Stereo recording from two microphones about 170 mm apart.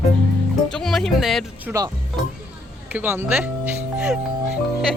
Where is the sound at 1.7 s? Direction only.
20° right (ahead or behind).